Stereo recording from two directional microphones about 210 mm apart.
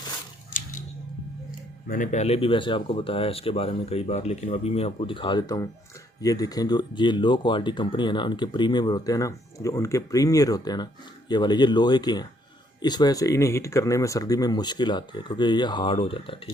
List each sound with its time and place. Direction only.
1.9 s speech: 35° left (ahead or behind)